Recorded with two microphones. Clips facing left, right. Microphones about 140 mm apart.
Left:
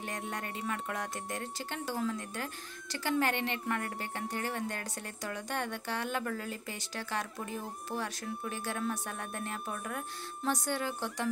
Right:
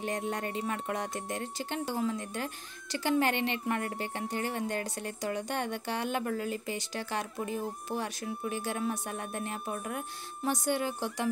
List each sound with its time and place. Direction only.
0.0 s speech: 25° right (ahead or behind)